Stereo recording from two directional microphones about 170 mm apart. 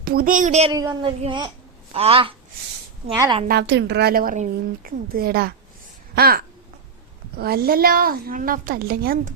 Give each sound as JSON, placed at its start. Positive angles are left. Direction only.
{"t": 0.0, "sound": "speech", "side_deg": -60}
{"t": 0.7, "sound": "speech", "side_deg": -20}
{"t": 3.4, "sound": "a woman's voice", "side_deg": -80}